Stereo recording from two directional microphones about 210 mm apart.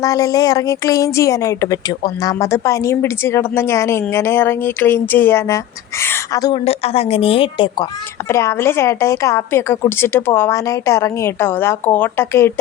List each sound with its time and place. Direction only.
0.0 s a woman's voice: 15° left (ahead or behind)
6.7 s a woman's voice: 30° left (ahead or behind)
8.3 s a woman's voice: 15° left (ahead or behind)